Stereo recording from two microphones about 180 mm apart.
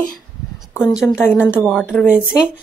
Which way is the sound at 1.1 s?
10° left (ahead or behind).